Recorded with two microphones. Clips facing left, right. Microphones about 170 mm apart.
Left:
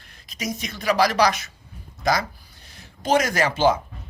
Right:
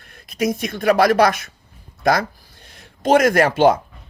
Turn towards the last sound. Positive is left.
turn(degrees=-65)  # may be behind; listen again after turning